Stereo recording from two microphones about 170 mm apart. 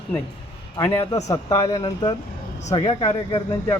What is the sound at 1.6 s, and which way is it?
Speech, 30° left (ahead or behind).